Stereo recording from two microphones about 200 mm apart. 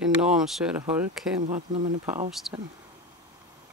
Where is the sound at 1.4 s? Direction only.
35° right (ahead or behind).